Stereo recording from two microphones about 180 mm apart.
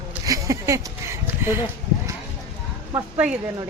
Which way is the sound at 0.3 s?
15° right (ahead or behind).